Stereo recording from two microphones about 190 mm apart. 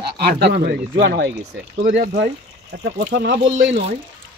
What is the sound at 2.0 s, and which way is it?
Speech, 55° right (ahead or behind).